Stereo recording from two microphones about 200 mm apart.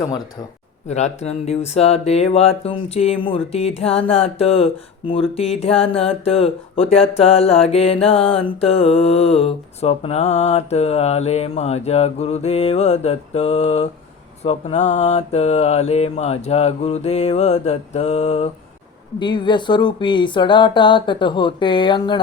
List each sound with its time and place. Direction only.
0.9 s mantra: 35° left (ahead or behind)
4.1 s speech: 30° left (ahead or behind)
8.0 s mantra: 30° left (ahead or behind)
19.2 s speech: 25° left (ahead or behind)